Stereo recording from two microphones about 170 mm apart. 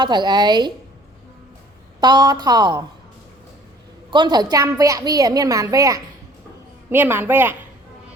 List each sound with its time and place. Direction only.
0.0 s a woman's voice: 25° right (ahead or behind)
2.0 s a woman's voice: 25° right (ahead or behind)
4.1 s a woman's voice: 25° right (ahead or behind)